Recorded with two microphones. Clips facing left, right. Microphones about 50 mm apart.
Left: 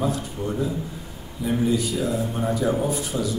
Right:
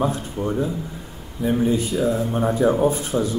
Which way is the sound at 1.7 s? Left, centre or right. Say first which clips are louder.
Right 3 dB; right.